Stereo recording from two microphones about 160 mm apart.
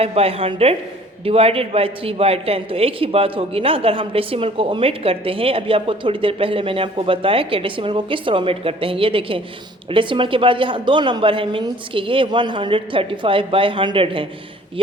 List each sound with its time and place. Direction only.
0.0 s a man's voice: 40° right (ahead or behind)